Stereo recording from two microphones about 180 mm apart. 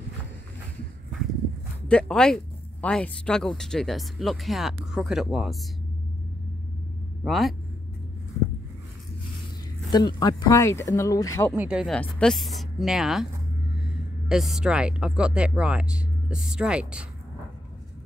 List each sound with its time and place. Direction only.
1.9 s speech: 5° left (ahead or behind)
7.2 s speech: centre (ahead or behind)
9.8 s speech: 25° left (ahead or behind)
11.5 s speech: 5° right (ahead or behind)
14.3 s speech: 5° right (ahead or behind)